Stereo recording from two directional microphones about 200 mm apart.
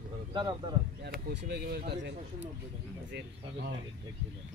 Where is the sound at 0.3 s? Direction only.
20° right (ahead or behind).